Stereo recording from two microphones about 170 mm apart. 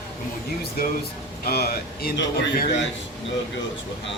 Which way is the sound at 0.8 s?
65° left (ahead or behind).